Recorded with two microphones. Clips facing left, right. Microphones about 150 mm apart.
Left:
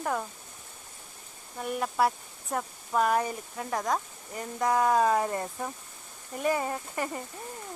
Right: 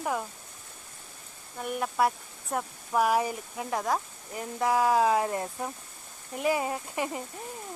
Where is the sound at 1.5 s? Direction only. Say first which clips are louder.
Even; centre (ahead or behind).